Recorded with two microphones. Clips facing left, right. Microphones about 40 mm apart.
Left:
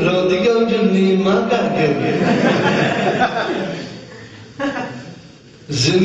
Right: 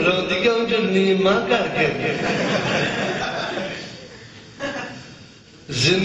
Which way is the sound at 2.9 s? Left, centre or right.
Left.